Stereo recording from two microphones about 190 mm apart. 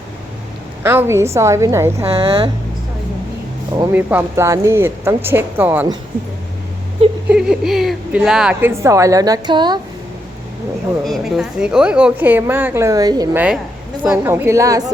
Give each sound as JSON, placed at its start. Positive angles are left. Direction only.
{"t": 0.8, "sound": "a woman's voice", "side_deg": -10}
{"t": 2.0, "sound": "a woman's voice", "side_deg": -30}
{"t": 3.9, "sound": "a woman's voice", "side_deg": -10}
{"t": 7.3, "sound": "a woman's voice", "side_deg": 0}
{"t": 11.0, "sound": "a woman's voice", "side_deg": 0}
{"t": 14.0, "sound": "a woman's voice", "side_deg": -10}